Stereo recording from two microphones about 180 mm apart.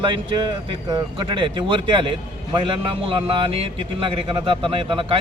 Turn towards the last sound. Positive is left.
turn(degrees=-30)  # may be behind; listen again after turning